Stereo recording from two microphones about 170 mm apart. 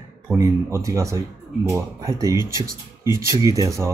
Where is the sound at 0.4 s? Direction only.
20° right (ahead or behind).